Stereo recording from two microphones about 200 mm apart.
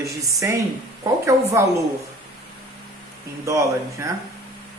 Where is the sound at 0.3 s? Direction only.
15° right (ahead or behind).